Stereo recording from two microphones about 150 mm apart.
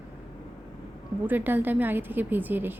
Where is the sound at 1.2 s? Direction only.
15° right (ahead or behind).